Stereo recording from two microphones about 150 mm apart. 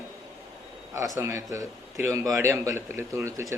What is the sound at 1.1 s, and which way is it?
A man's voice, 20° right (ahead or behind).